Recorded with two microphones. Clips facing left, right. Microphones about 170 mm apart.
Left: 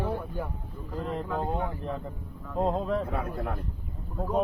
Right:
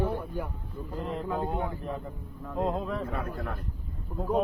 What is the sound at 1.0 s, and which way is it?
Speech, 5° right (ahead or behind).